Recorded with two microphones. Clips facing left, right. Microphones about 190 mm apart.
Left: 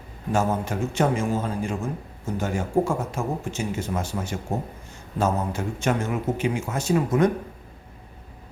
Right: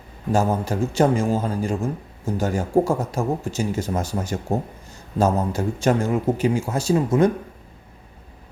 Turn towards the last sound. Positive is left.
turn(degrees=-30)  # may be behind; listen again after turning